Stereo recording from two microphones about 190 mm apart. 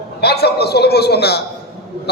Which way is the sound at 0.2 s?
60° left (ahead or behind).